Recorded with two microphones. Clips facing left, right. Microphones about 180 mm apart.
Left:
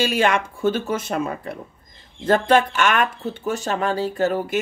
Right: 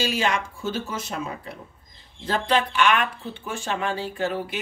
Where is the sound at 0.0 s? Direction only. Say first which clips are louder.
Left 5 dB; 55° left (ahead or behind).